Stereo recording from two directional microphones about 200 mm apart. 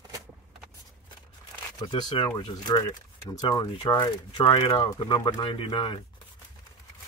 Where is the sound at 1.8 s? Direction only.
20° left (ahead or behind).